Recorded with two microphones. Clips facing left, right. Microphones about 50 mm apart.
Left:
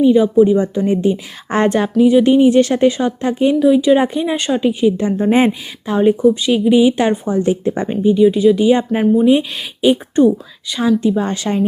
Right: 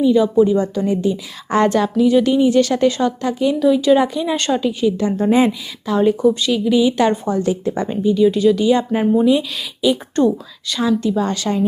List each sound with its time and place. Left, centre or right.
0.0 s speech: left
3.5 s speech: centre
4.0 s speech: left
4.4 s speech: centre
4.6 s speech: left
6.0 s speech: centre
10.2 s speech: centre